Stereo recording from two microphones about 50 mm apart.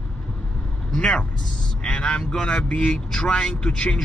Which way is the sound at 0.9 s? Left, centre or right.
Centre.